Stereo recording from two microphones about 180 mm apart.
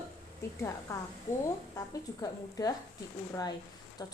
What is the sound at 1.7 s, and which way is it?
A woman's voice, 20° left (ahead or behind).